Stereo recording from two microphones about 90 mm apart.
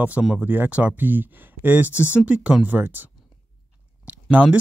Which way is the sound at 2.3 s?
10° right (ahead or behind).